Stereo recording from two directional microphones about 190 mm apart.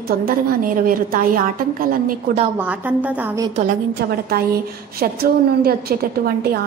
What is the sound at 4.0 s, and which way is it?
A woman's voice, 55° right (ahead or behind).